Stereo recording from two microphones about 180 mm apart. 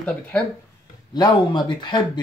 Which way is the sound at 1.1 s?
20° left (ahead or behind).